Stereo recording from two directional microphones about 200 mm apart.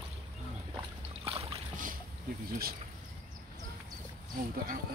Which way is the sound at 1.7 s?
40° right (ahead or behind).